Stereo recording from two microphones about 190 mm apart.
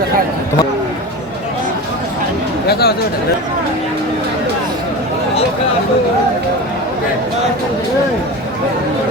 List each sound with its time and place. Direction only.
2.6 s speech: 55° left (ahead or behind)